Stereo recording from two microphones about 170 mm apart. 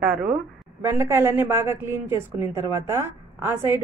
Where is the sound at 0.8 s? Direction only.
15° right (ahead or behind).